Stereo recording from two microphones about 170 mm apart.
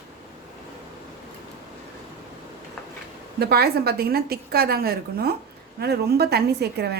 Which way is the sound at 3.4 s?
65° right (ahead or behind).